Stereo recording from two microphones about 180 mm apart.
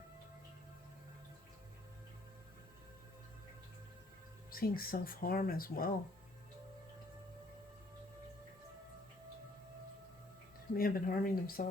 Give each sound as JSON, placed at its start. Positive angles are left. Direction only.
{"t": 4.5, "sound": "speech", "side_deg": 55}
{"t": 10.8, "sound": "speech", "side_deg": 55}